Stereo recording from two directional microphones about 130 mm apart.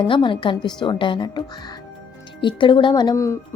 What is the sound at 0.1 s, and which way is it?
A woman's voice, 40° left (ahead or behind).